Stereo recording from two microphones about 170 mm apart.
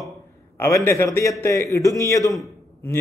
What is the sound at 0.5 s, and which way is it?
A man's voice, 15° left (ahead or behind).